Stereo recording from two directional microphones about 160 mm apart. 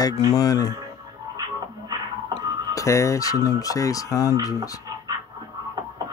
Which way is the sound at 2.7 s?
20° left (ahead or behind).